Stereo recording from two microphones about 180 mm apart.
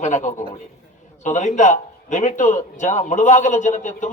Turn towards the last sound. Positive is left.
turn(degrees=40)  # may be behind; listen again after turning